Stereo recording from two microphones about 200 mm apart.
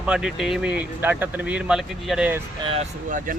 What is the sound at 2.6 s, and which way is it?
Speech, 30° right (ahead or behind).